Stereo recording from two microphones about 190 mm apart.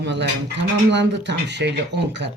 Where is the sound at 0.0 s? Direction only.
70° right (ahead or behind).